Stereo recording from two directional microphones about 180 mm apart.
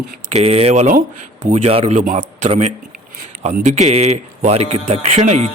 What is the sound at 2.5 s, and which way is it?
Speech, 35° right (ahead or behind).